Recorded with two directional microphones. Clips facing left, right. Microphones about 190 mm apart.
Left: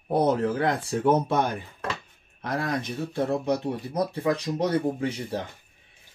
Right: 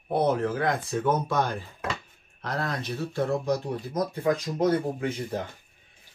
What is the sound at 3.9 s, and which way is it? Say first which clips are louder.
Speech: left 1 dB; 35° left (ahead or behind).